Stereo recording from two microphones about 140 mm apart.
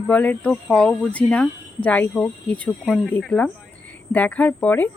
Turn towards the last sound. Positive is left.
turn(degrees=10)  # may be behind; listen again after turning